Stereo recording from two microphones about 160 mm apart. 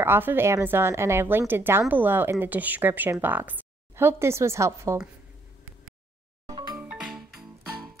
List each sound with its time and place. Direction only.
0.0 s speech: 15° right (ahead or behind)
6.4 s music: 25° right (ahead or behind)
6.8 s music: 10° right (ahead or behind)